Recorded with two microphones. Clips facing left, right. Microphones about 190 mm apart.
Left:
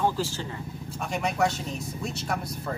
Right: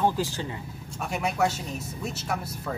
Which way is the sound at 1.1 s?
5° right (ahead or behind).